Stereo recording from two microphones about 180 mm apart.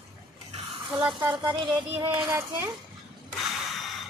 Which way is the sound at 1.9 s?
25° right (ahead or behind).